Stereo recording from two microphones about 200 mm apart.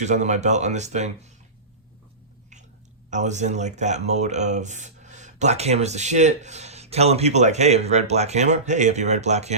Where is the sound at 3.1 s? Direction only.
35° right (ahead or behind).